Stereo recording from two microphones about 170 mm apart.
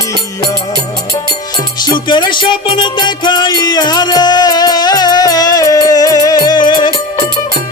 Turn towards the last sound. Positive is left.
turn(degrees=25)  # may be behind; listen again after turning